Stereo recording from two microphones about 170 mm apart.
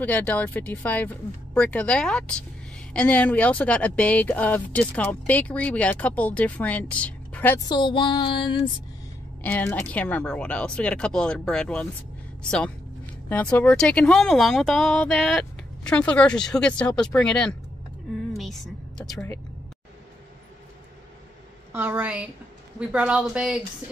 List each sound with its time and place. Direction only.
0.0 s speech: 10° left (ahead or behind)
7.6 s a sound: 25° left (ahead or behind)
9.4 s a woman's voice: 10° left (ahead or behind)
21.7 s a woman's voice: 10° right (ahead or behind)